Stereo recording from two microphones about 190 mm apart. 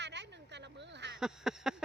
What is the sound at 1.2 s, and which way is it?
Speech, 5° right (ahead or behind).